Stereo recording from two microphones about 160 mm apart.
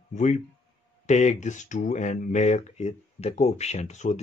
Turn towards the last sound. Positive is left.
turn(degrees=45)  # may be behind; listen again after turning